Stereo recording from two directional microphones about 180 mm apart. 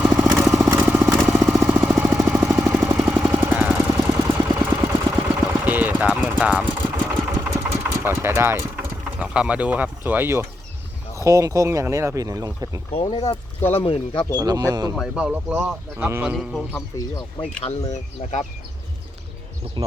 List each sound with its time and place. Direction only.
0.0 s motorcycle: 10° right (ahead or behind)
1.5 s vehicle: 10° right (ahead or behind)
4.2 s engine: 15° right (ahead or behind)
8.0 s speech: 15° right (ahead or behind)
12.9 s speech: 30° left (ahead or behind)
13.6 s speech: 10° left (ahead or behind)
13.8 s speech: 30° left (ahead or behind)
14.3 s speech: 20° right (ahead or behind)
14.9 s speech: 5° right (ahead or behind)
16.3 s a man's voice: centre (ahead or behind)
16.7 s speech: 20° left (ahead or behind)
17.6 s speech: 35° left (ahead or behind)